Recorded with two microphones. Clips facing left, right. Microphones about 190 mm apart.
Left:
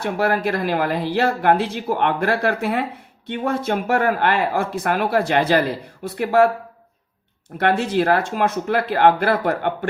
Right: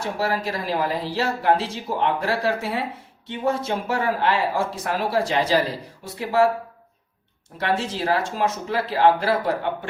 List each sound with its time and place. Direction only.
0.0 s speech: 60° left (ahead or behind)
7.6 s speech: 60° left (ahead or behind)